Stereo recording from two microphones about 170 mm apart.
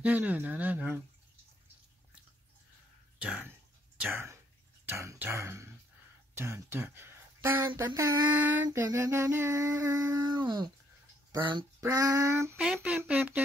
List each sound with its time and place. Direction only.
0.0 s speech: 10° right (ahead or behind)
3.2 s speech: 10° right (ahead or behind)
8.6 s female singing: 20° right (ahead or behind)
11.8 s speech: 20° right (ahead or behind)
12.5 s speech: 5° right (ahead or behind)